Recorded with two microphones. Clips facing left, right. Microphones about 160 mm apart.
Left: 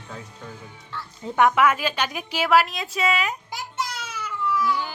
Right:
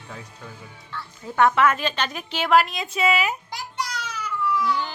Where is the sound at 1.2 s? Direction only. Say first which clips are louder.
Even; 15° left (ahead or behind); by 3.6 s 5° right (ahead or behind).